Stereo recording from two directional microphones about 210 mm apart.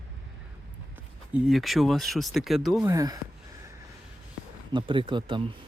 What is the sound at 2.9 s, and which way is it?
Speech, 15° right (ahead or behind).